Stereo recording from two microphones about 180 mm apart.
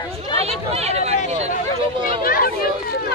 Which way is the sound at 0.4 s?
35° right (ahead or behind).